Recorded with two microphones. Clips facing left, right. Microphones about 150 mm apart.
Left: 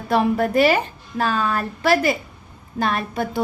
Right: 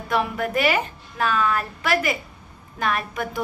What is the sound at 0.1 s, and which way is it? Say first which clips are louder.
A woman's voice: left 5 dB; 30° left (ahead or behind).